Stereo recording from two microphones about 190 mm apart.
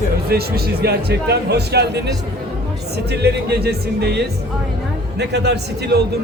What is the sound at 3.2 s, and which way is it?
Speech, 55° right (ahead or behind).